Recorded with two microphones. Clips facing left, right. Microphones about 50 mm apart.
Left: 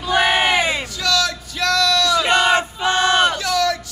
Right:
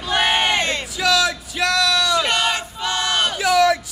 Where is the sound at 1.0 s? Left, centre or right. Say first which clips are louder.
Right 5 dB; centre.